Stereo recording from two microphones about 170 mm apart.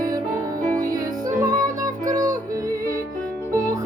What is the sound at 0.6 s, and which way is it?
Music, 55° right (ahead or behind).